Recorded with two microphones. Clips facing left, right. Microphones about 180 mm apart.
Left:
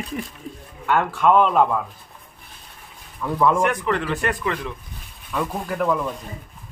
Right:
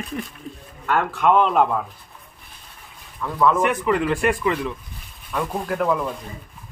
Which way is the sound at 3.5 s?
5° right (ahead or behind).